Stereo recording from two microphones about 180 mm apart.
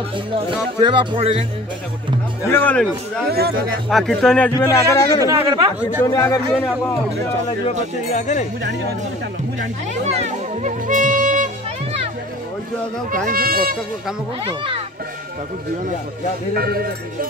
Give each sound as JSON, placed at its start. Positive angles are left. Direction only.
{"t": 0.7, "sound": "speech", "side_deg": -25}
{"t": 2.4, "sound": "a man's voice", "side_deg": 10}
{"t": 3.3, "sound": "speech", "side_deg": -60}
{"t": 3.9, "sound": "speech", "side_deg": 0}
{"t": 4.6, "sound": "a man's voice", "side_deg": 15}
{"t": 5.4, "sound": "speech", "side_deg": -25}
{"t": 6.0, "sound": "a man's voice", "side_deg": 15}
{"t": 8.1, "sound": "speech", "side_deg": 40}
{"t": 10.1, "sound": "music", "side_deg": -45}
{"t": 13.3, "sound": "speech", "side_deg": -55}
{"t": 14.4, "sound": "speech", "side_deg": -30}
{"t": 16.5, "sound": "speech", "side_deg": -55}